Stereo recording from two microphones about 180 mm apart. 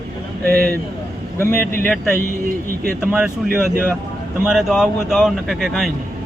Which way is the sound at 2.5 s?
50° right (ahead or behind).